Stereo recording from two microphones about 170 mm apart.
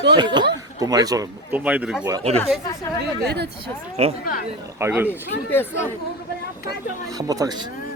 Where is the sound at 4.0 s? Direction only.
40° right (ahead or behind).